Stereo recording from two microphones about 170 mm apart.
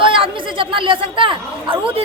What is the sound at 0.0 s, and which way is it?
A woman's voice, 30° right (ahead or behind).